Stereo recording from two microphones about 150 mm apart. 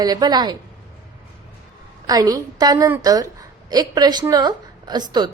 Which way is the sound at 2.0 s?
25° right (ahead or behind).